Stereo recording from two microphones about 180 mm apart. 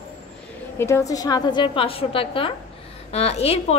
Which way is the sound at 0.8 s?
15° left (ahead or behind).